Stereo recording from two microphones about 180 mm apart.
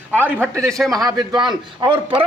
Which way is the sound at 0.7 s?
Centre (ahead or behind).